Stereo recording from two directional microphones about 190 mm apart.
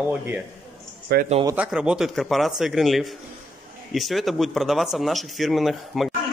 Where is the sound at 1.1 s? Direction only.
55° right (ahead or behind).